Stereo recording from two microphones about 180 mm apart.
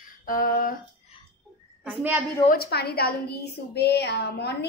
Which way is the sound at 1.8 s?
10° right (ahead or behind).